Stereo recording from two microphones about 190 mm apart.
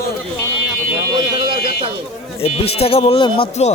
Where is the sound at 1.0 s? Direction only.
20° right (ahead or behind).